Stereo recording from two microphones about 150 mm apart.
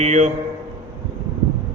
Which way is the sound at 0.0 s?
50° right (ahead or behind).